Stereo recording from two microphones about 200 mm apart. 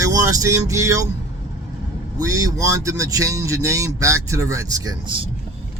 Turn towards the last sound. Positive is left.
turn(degrees=-20)  # may be behind; listen again after turning